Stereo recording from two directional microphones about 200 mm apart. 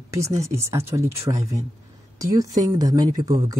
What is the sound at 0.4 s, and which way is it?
Speech, 15° right (ahead or behind).